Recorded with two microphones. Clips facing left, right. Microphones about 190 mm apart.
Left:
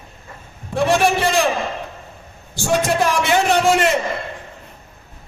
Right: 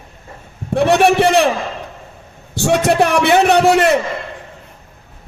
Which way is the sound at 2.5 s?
65° right (ahead or behind).